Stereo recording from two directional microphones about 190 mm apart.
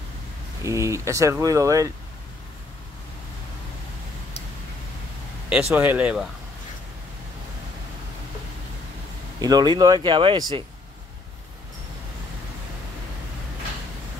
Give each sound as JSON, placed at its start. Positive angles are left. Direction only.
{"t": 0.7, "sound": "speech", "side_deg": -15}
{"t": 5.5, "sound": "speech", "side_deg": -5}
{"t": 9.4, "sound": "speech", "side_deg": -20}